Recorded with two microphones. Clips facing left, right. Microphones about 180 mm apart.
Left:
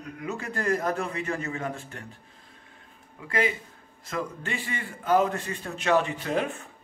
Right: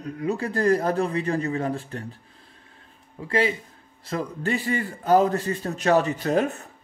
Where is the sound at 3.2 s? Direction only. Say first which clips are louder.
Right 4 dB; 35° right (ahead or behind).